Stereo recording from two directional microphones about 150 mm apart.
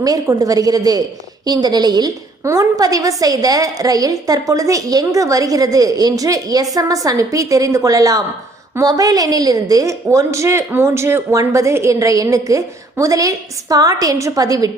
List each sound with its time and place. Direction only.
0.0 s a woman's voice: 25° right (ahead or behind)